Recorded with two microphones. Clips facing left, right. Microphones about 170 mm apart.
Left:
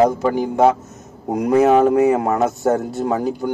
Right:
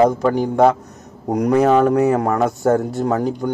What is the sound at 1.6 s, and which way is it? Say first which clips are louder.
Speech: left 2 dB; 20° left (ahead or behind).